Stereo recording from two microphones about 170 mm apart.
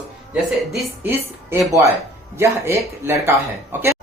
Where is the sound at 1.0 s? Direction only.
15° right (ahead or behind).